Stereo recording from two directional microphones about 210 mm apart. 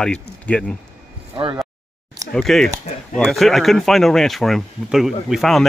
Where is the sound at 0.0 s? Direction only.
5° left (ahead or behind).